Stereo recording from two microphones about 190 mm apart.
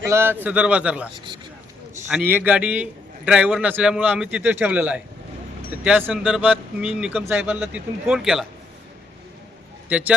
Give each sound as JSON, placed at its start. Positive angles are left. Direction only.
{"t": 0.0, "sound": "a man's voice", "side_deg": -15}
{"t": 1.1, "sound": "speech", "side_deg": -25}
{"t": 2.3, "sound": "a man's voice", "side_deg": -10}
{"t": 9.9, "sound": "a man's voice", "side_deg": -5}